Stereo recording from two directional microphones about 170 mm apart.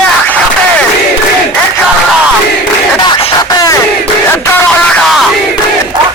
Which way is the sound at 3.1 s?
35° left (ahead or behind).